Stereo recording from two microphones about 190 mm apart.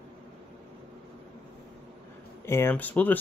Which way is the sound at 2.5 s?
10° left (ahead or behind).